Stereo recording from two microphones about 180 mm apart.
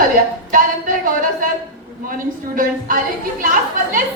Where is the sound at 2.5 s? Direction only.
50° right (ahead or behind).